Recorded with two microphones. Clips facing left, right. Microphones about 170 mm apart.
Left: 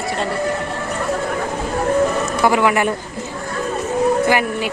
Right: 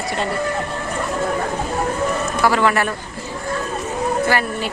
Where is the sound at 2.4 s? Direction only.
15° left (ahead or behind).